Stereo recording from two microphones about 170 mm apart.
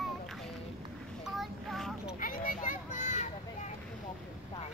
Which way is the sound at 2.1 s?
55° left (ahead or behind).